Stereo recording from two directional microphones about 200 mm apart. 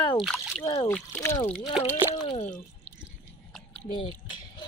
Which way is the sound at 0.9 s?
10° left (ahead or behind).